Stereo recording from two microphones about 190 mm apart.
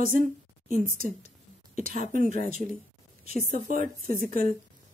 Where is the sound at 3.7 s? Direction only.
45° right (ahead or behind).